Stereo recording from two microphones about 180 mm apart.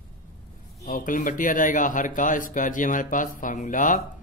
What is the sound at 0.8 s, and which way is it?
Speech, 50° left (ahead or behind).